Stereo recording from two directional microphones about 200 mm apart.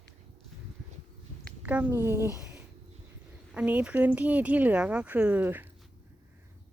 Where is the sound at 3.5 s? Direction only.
5° right (ahead or behind).